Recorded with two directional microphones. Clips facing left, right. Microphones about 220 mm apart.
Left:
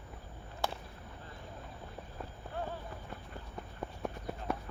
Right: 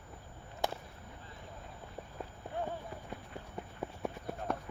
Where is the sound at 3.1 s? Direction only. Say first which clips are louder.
Right 2 dB; 15° right (ahead or behind).